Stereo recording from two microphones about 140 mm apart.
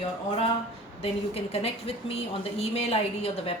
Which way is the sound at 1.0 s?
45° left (ahead or behind).